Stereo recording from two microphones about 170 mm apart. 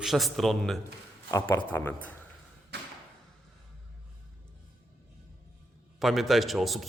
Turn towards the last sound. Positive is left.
turn(degrees=0)  # may be behind; listen again after turning